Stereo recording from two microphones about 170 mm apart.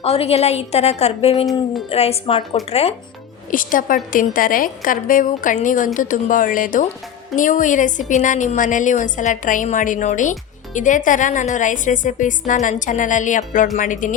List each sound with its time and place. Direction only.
0.0 s a woman's voice: 35° left (ahead or behind)
3.5 s a woman's voice: 55° left (ahead or behind)